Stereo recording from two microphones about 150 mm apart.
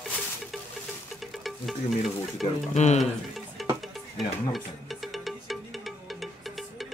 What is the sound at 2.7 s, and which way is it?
Speech, 50° left (ahead or behind).